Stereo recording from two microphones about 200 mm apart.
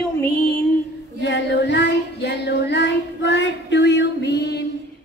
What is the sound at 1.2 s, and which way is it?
Child singing, 60° left (ahead or behind).